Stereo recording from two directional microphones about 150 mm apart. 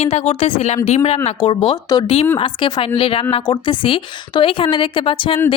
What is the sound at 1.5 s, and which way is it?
Speech, 30° left (ahead or behind).